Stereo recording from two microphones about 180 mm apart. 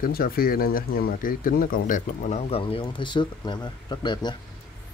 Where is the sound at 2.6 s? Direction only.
30° left (ahead or behind).